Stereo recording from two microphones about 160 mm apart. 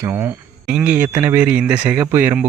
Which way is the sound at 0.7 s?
5° right (ahead or behind).